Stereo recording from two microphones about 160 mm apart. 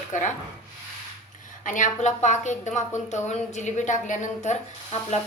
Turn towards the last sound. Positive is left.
turn(degrees=45)  # may be behind; listen again after turning